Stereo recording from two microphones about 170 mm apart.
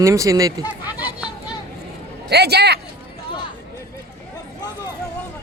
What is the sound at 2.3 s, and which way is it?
Speech, 75° right (ahead or behind).